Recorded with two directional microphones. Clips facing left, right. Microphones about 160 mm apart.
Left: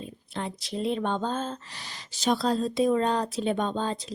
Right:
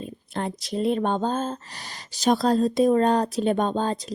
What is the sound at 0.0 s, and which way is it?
Speech, 50° right (ahead or behind).